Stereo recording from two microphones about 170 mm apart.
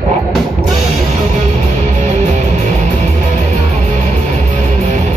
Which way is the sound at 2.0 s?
45° right (ahead or behind).